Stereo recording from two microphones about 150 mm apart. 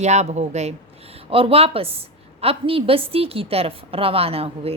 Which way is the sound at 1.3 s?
40° right (ahead or behind).